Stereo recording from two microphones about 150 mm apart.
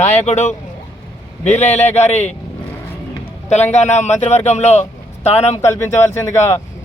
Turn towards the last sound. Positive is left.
turn(degrees=20)  # may be behind; listen again after turning